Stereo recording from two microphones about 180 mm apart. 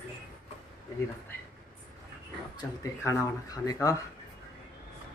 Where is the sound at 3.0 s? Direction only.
20° left (ahead or behind).